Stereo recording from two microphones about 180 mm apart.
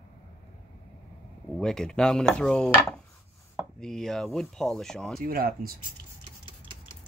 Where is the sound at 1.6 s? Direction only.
5° left (ahead or behind).